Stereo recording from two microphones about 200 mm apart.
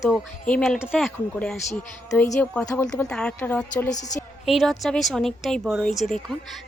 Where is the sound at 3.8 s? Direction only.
15° left (ahead or behind).